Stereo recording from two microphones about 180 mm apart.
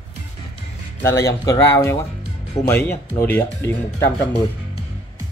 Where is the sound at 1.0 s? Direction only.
15° left (ahead or behind).